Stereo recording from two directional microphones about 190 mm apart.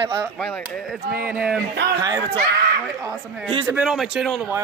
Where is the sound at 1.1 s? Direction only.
5° right (ahead or behind).